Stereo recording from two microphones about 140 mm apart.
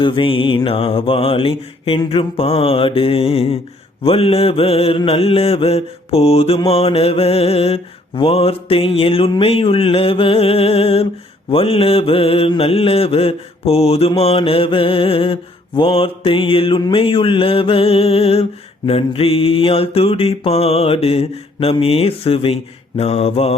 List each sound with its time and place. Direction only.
0.0 s mantra: 40° left (ahead or behind)